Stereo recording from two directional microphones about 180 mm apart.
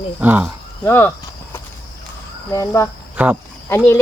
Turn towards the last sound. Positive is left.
turn(degrees=10)  # may be behind; listen again after turning